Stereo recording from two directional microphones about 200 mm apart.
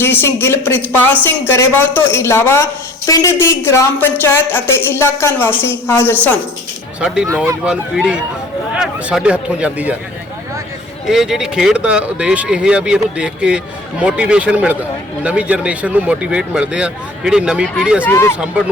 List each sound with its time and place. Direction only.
0.0 s a woman's voice: 10° left (ahead or behind)
7.0 s a man's voice: 5° right (ahead or behind)
11.0 s a man's voice: centre (ahead or behind)
18.0 s a woman's voice: 15° left (ahead or behind)